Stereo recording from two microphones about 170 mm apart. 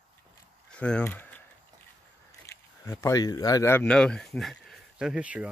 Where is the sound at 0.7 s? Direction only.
5° left (ahead or behind).